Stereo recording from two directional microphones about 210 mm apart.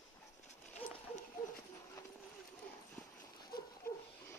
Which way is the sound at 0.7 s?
35° left (ahead or behind).